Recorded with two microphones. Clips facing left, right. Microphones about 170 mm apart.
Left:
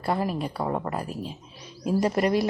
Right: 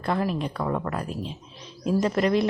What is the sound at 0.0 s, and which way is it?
Speech, 10° left (ahead or behind).